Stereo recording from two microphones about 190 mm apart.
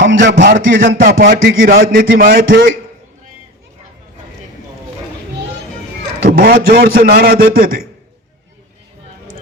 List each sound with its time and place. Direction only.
0.3 s a man's voice: 50° right (ahead or behind)
6.2 s a man's voice: 50° right (ahead or behind)